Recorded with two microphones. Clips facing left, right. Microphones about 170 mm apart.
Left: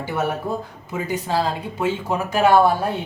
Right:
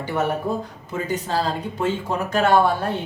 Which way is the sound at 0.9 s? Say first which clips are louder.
Left 1 dB; 10° left (ahead or behind).